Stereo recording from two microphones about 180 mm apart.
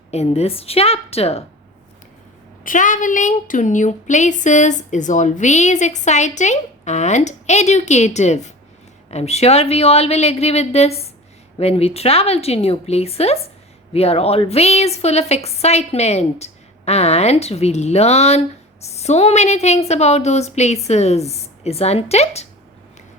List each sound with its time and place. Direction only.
0.1 s a woman's voice: 35° left (ahead or behind)
2.6 s a woman's voice: 45° left (ahead or behind)